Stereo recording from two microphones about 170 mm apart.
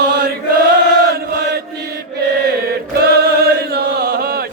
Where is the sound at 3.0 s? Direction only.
65° right (ahead or behind).